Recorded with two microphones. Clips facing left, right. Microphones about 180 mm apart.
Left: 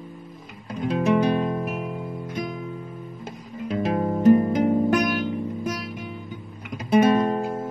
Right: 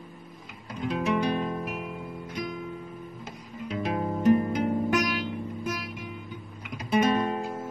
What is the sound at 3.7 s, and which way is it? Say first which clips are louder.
Music: left 5 dB; 45° left (ahead or behind).